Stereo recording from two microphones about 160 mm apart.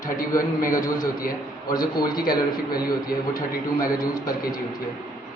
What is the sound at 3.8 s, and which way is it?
Speech, 25° left (ahead or behind).